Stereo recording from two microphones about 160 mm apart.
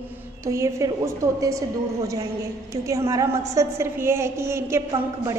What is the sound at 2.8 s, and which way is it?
A woman's voice, 20° right (ahead or behind).